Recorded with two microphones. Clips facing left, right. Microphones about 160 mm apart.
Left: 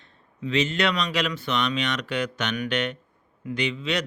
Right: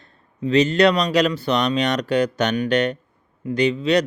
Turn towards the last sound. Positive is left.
turn(degrees=-40)  # may be behind; listen again after turning